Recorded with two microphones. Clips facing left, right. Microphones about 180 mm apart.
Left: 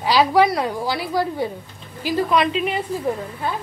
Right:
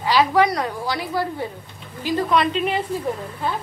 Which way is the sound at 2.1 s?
5° left (ahead or behind).